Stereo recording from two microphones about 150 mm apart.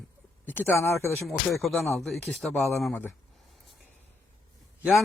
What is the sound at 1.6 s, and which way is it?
Speech, centre (ahead or behind).